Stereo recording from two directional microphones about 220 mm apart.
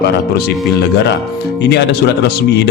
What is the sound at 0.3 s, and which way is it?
A man's voice, 45° left (ahead or behind).